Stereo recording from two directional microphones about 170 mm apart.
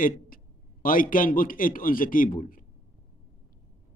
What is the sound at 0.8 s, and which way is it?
Speech, 55° left (ahead or behind).